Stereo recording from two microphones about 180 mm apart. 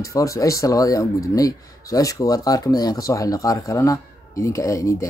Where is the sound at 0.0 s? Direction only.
20° left (ahead or behind).